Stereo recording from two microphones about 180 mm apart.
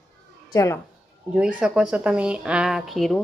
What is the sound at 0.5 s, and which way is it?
Speech, 15° left (ahead or behind).